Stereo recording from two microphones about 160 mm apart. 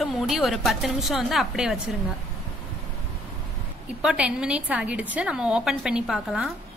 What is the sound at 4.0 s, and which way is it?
A woman's voice, 5° right (ahead or behind).